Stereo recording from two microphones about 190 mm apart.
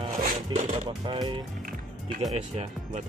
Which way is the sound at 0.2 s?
45° right (ahead or behind).